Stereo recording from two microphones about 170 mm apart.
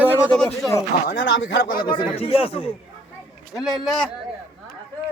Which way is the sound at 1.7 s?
55° left (ahead or behind).